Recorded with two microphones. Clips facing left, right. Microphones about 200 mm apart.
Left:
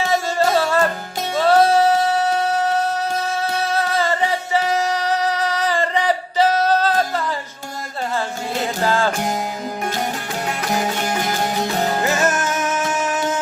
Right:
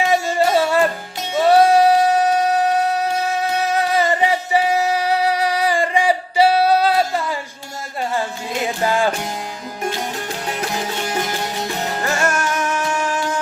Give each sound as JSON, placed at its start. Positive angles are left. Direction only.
{"t": 0.1, "sound": "music", "side_deg": -15}
{"t": 8.9, "sound": "music", "side_deg": -15}
{"t": 12.0, "sound": "music", "side_deg": 20}